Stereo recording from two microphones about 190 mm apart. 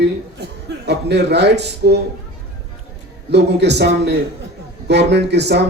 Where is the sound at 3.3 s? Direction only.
65° right (ahead or behind).